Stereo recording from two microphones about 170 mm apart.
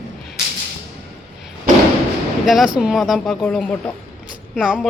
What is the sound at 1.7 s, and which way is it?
Thump, 55° right (ahead or behind).